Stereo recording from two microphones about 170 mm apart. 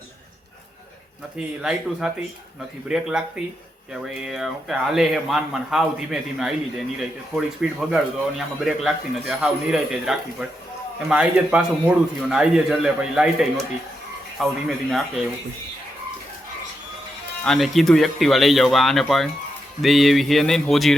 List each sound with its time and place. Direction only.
1.4 s speech: 5° right (ahead or behind)
17.4 s speech: centre (ahead or behind)